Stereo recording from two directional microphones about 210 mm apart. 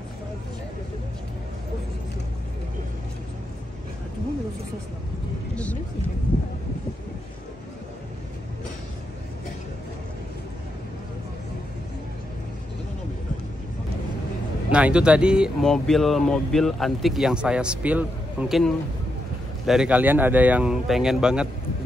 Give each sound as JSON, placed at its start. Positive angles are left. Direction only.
{"t": 14.7, "sound": "speech", "side_deg": -5}